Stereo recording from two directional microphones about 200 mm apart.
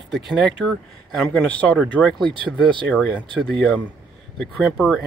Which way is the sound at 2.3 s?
25° right (ahead or behind).